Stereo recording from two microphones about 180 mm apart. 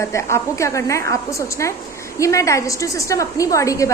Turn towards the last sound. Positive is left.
turn(degrees=15)  # may be behind; listen again after turning